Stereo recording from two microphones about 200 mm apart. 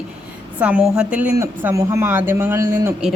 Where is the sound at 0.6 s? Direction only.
5° right (ahead or behind).